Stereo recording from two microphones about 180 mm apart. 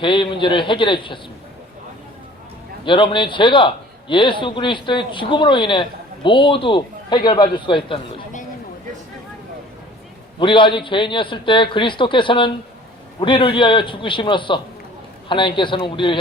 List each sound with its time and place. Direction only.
0.0 s speech: 30° left (ahead or behind)
2.8 s speech: 25° left (ahead or behind)
10.4 s speech: 25° left (ahead or behind)